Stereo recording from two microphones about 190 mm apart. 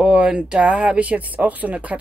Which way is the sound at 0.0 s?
5° right (ahead or behind).